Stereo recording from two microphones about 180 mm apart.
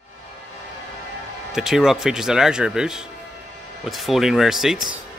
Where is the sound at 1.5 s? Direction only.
5° right (ahead or behind).